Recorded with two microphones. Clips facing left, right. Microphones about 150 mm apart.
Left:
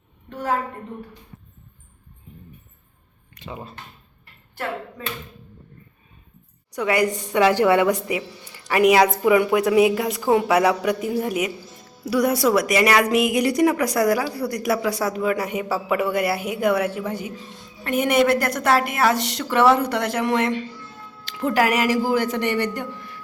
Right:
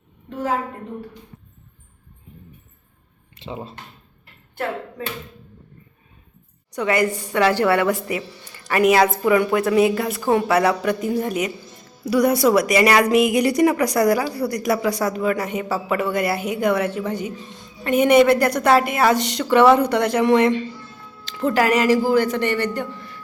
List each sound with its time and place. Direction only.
3.3 s speech: 25° right (ahead or behind)
6.7 s a woman's voice: 10° left (ahead or behind)